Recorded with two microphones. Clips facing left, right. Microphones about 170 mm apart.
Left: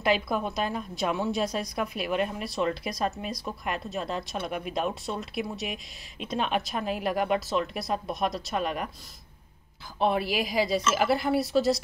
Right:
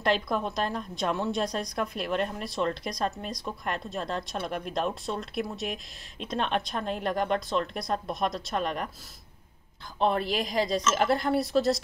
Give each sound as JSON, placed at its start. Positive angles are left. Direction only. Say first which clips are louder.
{"t": 0.0, "sound": "a woman's voice", "louder": "left 1 dB", "side_deg": 5}
{"t": 9.9, "sound": "a woman's voice", "louder": "even", "side_deg": 5}